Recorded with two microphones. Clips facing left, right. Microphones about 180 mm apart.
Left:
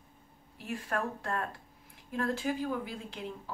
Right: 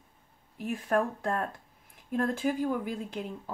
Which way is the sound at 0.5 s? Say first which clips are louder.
Right 7 dB; 50° right (ahead or behind).